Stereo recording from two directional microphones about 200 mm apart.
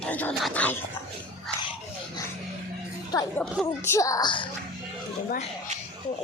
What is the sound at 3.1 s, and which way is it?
Speech, 15° left (ahead or behind).